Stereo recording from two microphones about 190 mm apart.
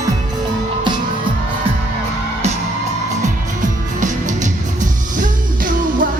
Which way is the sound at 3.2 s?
40° right (ahead or behind).